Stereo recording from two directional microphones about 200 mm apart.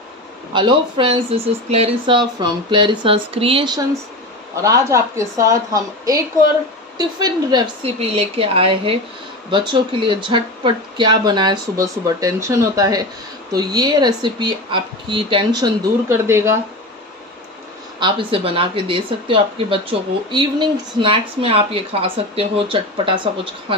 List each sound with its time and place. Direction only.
0.5 s a woman's voice: 25° right (ahead or behind)
17.9 s speech: 25° right (ahead or behind)